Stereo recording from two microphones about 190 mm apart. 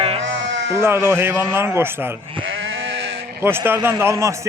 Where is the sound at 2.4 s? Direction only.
85° right.